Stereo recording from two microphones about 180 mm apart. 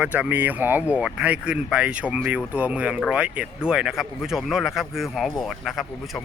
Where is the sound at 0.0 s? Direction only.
10° right (ahead or behind).